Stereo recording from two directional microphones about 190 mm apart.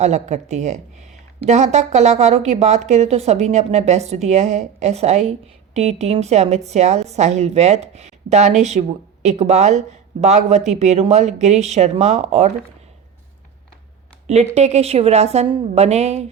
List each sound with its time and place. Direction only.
0.0 s speech: 35° right (ahead or behind)
14.3 s speech: 35° right (ahead or behind)